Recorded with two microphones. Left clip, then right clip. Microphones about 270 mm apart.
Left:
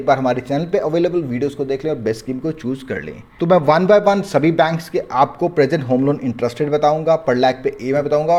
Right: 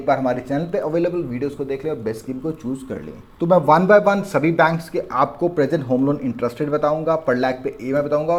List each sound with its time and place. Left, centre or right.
0.0 s speech: left
4.1 s speech: left
6.7 s speech: left
7.0 s speech: left